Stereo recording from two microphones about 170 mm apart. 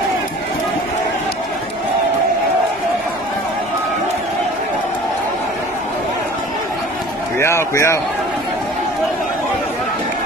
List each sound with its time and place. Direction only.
7.3 s a man's voice: 15° left (ahead or behind)